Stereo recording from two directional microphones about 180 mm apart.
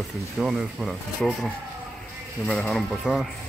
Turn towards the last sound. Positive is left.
turn(degrees=0)  # may be behind; listen again after turning